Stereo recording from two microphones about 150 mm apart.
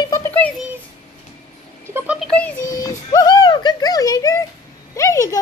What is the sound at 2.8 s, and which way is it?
Speech, 25° left (ahead or behind).